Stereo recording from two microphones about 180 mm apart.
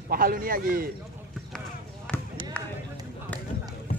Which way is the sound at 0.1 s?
55° right (ahead or behind).